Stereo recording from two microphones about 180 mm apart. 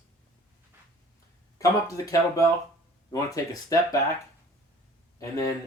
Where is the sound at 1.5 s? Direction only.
20° left (ahead or behind).